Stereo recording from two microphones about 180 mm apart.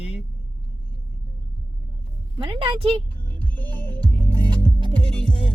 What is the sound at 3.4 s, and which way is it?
Music, 10° left (ahead or behind).